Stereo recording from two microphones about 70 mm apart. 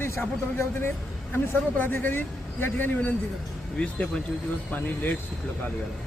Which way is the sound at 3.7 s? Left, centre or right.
Centre.